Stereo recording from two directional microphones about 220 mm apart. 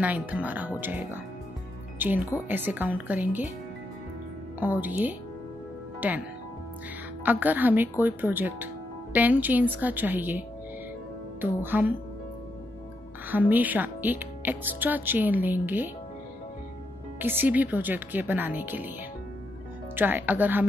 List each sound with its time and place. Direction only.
0.0 s speech: 5° right (ahead or behind)
4.6 s speech: 10° right (ahead or behind)
7.2 s speech: 10° right (ahead or behind)
11.4 s speech: 10° right (ahead or behind)
13.3 s speech: 10° right (ahead or behind)
17.2 s speech: 10° right (ahead or behind)
20.0 s speech: 10° right (ahead or behind)